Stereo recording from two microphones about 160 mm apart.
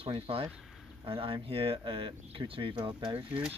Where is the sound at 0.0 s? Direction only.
35° right (ahead or behind).